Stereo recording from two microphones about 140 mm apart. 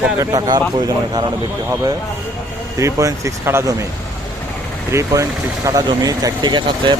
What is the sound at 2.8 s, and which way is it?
Speech, 25° right (ahead or behind).